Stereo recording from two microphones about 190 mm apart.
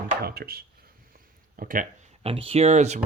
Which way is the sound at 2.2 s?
30° right (ahead or behind).